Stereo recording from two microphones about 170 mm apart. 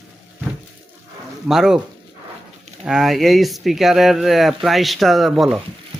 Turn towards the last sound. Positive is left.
turn(degrees=0)  # may be behind; listen again after turning